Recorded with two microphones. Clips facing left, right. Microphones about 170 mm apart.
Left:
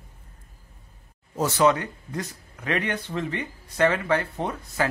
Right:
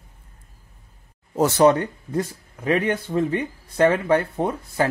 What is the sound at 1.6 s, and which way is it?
Speech, 35° right (ahead or behind).